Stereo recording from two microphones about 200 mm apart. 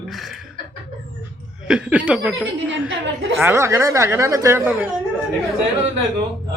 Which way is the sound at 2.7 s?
65° right (ahead or behind).